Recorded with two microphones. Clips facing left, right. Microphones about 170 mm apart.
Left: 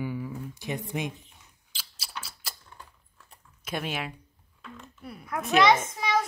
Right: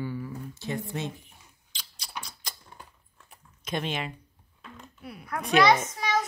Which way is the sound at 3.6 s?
5° left (ahead or behind).